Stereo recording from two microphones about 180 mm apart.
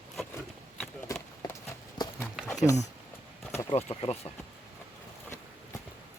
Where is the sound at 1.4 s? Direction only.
20° left (ahead or behind).